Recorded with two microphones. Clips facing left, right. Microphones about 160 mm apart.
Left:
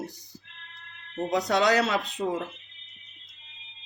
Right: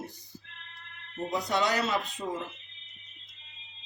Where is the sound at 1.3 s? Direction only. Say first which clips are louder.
Left 5 dB; 80° left.